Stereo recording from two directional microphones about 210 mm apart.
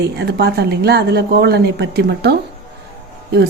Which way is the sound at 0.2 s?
50° right (ahead or behind).